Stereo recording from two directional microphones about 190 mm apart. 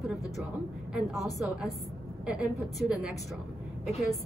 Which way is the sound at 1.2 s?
Centre (ahead or behind).